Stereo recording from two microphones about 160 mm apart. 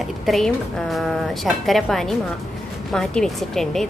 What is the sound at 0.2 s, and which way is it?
A woman's voice, centre (ahead or behind).